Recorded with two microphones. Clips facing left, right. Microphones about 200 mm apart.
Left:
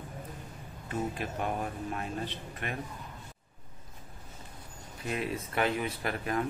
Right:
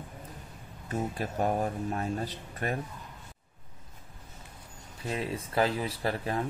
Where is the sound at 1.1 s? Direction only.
40° right (ahead or behind).